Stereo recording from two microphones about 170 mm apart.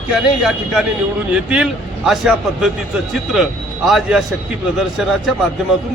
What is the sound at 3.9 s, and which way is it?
A man's voice, centre (ahead or behind).